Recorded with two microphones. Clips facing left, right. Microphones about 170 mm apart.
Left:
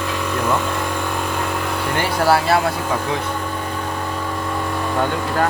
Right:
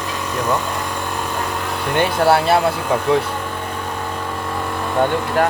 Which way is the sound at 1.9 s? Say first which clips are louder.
Right 3 dB; 25° right (ahead or behind).